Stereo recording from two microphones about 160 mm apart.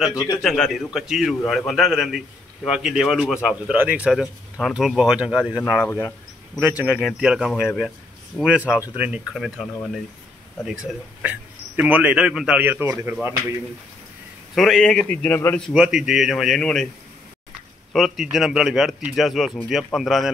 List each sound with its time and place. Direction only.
0.1 s a man's voice: 20° left (ahead or behind)
0.4 s a man's voice: centre (ahead or behind)
5.8 s a man's voice: 15° left (ahead or behind)
6.9 s a man's voice: centre (ahead or behind)
9.3 s a man's voice: centre (ahead or behind)
14.5 s a man's voice: centre (ahead or behind)
15.6 s a man's voice: 5° right (ahead or behind)
17.9 s a man's voice: centre (ahead or behind)